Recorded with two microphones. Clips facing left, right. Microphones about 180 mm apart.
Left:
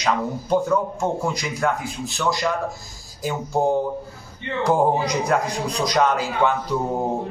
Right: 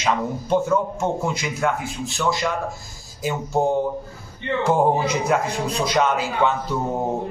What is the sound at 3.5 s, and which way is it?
Speech, 20° right (ahead or behind).